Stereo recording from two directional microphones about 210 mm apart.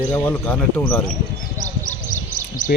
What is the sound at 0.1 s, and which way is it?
Speech, 10° left (ahead or behind).